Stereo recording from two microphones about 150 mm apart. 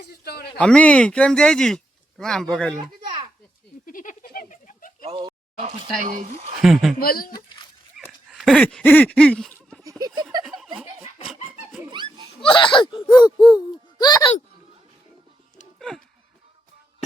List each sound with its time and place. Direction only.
0.1 s speech: 90° left
0.6 s speech: 10° left (ahead or behind)
3.8 s a sound: 60° left (ahead or behind)
6.0 s speech: 65° right (ahead or behind)
6.6 s speech: centre (ahead or behind)
7.0 s speech: 80° left
7.9 s dog: centre (ahead or behind)
10.4 s snicker: centre (ahead or behind)
11.9 s a sound: 35° right (ahead or behind)
12.4 s speech: 35° left (ahead or behind)